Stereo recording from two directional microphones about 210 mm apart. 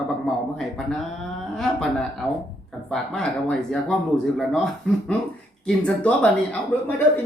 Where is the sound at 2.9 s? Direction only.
Centre (ahead or behind).